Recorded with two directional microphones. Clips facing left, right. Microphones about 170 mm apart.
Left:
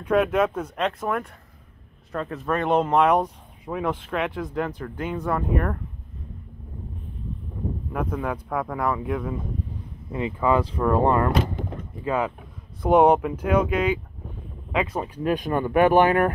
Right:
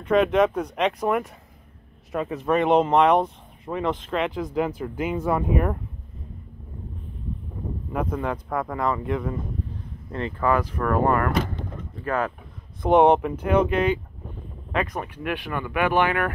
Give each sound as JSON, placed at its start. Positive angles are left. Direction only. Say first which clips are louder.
{"t": 0.0, "sound": "speech", "louder": "right 2 dB", "side_deg": 5}
{"t": 7.9, "sound": "speech", "louder": "right 2 dB", "side_deg": 0}
{"t": 10.1, "sound": "speech", "louder": "left 1 dB", "side_deg": 15}
{"t": 15.2, "sound": "speech", "louder": "left 7 dB", "side_deg": 40}